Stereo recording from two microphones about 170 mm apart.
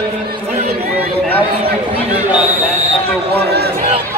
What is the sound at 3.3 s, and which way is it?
Speech, 70° right (ahead or behind).